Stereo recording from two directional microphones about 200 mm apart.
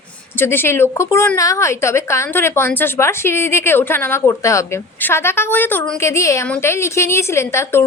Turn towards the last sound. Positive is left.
turn(degrees=15)  # may be behind; listen again after turning